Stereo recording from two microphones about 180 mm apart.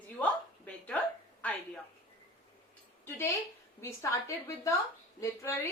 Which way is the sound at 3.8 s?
15° left (ahead or behind).